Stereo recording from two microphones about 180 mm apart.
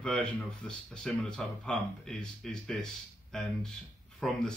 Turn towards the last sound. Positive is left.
turn(degrees=5)  # may be behind; listen again after turning